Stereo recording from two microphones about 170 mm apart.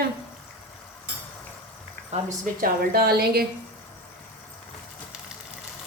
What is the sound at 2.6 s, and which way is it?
Speech, 65° right (ahead or behind).